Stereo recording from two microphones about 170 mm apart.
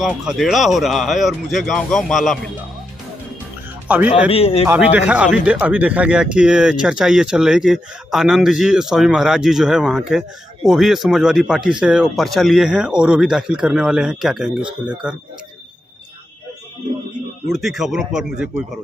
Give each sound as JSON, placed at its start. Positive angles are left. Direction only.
{"t": 0.0, "sound": "speech", "side_deg": -5}
{"t": 3.8, "sound": "a man's voice", "side_deg": -10}
{"t": 4.3, "sound": "a man's voice", "side_deg": 35}
{"t": 4.7, "sound": "speech", "side_deg": -10}
{"t": 14.6, "sound": "speech", "side_deg": -30}
{"t": 17.5, "sound": "speech", "side_deg": 0}